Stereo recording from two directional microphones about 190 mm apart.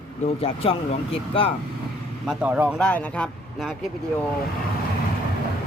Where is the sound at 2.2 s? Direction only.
Centre (ahead or behind).